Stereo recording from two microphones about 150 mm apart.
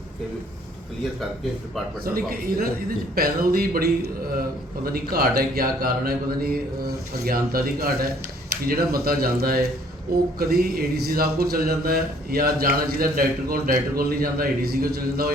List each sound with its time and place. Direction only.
2.0 s a man's voice: 75° right (ahead or behind)